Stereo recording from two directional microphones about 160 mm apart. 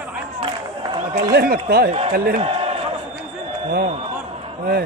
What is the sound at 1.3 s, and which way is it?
A man's voice, 75° right (ahead or behind).